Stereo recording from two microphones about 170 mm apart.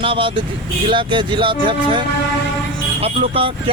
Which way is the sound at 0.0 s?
30° right (ahead or behind).